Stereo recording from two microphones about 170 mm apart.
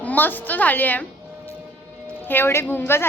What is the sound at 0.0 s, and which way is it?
A woman's voice, 10° left (ahead or behind).